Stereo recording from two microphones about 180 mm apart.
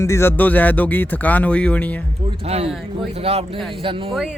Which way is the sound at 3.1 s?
35° right (ahead or behind).